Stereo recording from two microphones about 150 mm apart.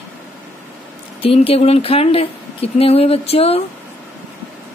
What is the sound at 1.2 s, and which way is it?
Speech, 40° left (ahead or behind).